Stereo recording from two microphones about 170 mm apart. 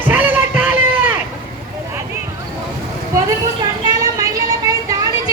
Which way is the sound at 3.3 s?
20° right (ahead or behind).